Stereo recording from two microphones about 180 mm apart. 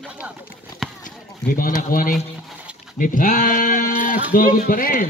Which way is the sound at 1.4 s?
50° left (ahead or behind).